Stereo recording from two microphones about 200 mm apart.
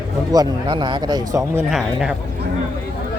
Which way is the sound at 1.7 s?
Centre (ahead or behind).